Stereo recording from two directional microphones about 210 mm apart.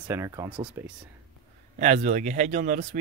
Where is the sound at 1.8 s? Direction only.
35° right (ahead or behind).